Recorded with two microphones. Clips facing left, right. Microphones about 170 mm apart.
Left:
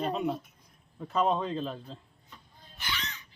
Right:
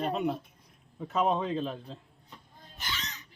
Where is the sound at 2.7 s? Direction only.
45° right (ahead or behind).